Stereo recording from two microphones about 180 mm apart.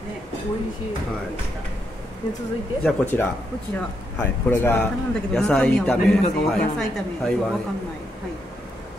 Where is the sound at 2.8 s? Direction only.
10° left (ahead or behind).